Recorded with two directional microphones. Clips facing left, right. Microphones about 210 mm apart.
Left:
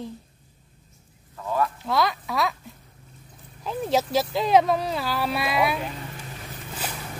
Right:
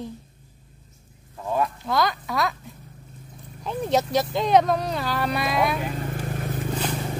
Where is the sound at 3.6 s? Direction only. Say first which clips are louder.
Right 1 dB; centre (ahead or behind).